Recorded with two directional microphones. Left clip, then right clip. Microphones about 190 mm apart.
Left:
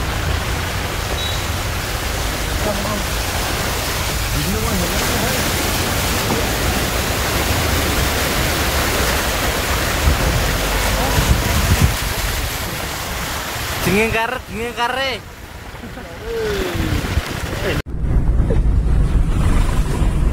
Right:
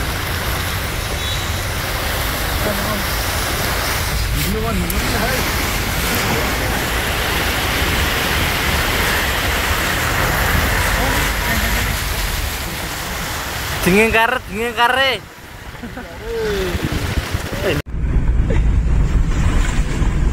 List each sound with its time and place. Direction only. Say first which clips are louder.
13.8 s speech: right 4 dB; 15° right (ahead or behind)